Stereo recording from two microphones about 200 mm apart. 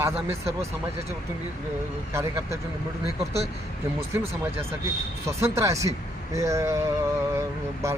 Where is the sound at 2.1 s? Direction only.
15° right (ahead or behind).